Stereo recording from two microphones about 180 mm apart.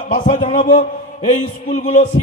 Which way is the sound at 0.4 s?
30° left (ahead or behind).